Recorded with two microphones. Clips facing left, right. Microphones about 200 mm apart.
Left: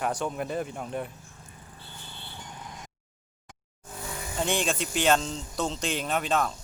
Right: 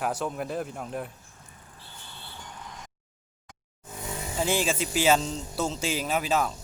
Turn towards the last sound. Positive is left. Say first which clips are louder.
# right 1 dB
turn(degrees=-5)  # may be behind; listen again after turning